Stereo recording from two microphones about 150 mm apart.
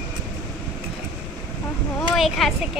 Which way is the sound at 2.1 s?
Centre (ahead or behind).